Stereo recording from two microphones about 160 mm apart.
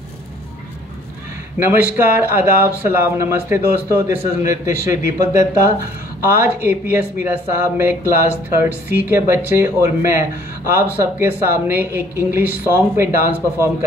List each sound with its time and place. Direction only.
1.6 s a man's voice: 10° right (ahead or behind)